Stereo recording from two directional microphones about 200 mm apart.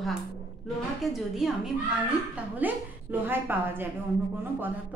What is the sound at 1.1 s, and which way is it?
A woman's voice, centre (ahead or behind).